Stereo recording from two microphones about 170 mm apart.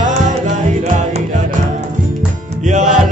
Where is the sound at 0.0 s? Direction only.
45° right (ahead or behind).